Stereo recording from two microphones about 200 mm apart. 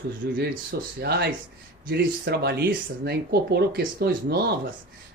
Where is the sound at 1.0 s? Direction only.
55° right (ahead or behind).